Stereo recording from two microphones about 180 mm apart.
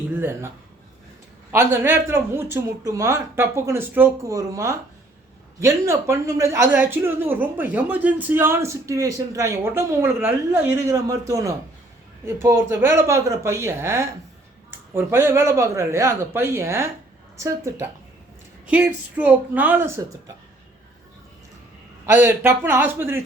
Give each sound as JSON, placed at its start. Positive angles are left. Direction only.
{"t": 0.1, "sound": "speech", "side_deg": -10}
{"t": 22.0, "sound": "speech", "side_deg": -10}